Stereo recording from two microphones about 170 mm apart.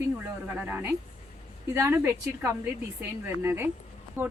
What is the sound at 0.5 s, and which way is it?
A woman's voice, 10° right (ahead or behind).